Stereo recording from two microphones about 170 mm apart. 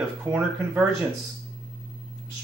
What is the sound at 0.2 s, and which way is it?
Speech, 10° right (ahead or behind).